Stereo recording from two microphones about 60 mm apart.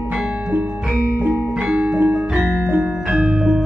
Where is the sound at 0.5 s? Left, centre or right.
Right.